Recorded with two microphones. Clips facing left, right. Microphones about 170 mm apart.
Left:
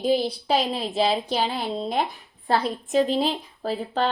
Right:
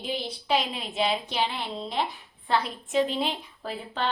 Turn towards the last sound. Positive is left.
turn(degrees=35)  # may be behind; listen again after turning